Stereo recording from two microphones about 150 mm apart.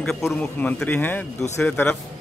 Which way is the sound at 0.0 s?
5° left (ahead or behind).